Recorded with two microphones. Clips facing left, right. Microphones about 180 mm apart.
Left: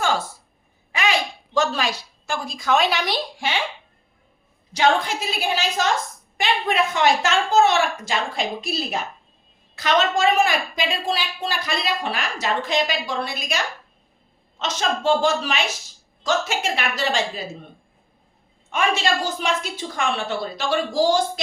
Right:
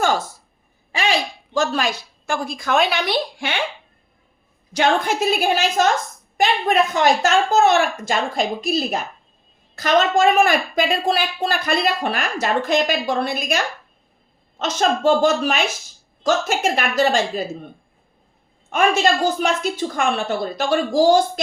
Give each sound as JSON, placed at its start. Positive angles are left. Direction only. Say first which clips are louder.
{"t": 1.5, "sound": "a woman's voice", "louder": "right 2 dB", "side_deg": -45}
{"t": 4.7, "sound": "a woman's voice", "louder": "right 1 dB", "side_deg": -50}
{"t": 14.6, "sound": "a woman's voice", "louder": "right 5 dB", "side_deg": -50}
{"t": 18.7, "sound": "a woman's voice", "louder": "right 4 dB", "side_deg": -45}